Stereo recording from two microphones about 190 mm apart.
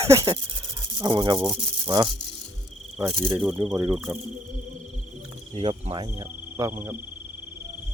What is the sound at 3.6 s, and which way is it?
Speech, 15° right (ahead or behind).